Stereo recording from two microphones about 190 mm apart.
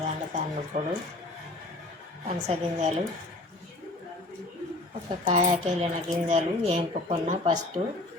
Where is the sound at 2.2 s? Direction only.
35° right (ahead or behind).